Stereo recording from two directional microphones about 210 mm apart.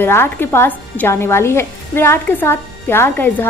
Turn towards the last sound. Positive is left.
turn(degrees=10)  # may be behind; listen again after turning